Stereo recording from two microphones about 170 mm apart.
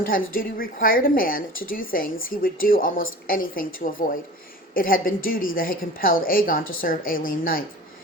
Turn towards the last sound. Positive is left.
turn(degrees=55)  # may be behind; listen again after turning